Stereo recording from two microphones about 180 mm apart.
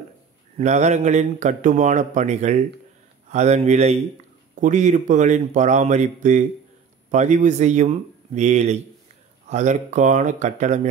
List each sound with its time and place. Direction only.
0.6 s a man's voice: 40° right (ahead or behind)